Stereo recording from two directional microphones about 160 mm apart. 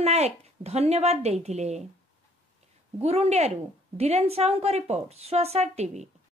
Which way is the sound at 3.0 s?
40° right (ahead or behind).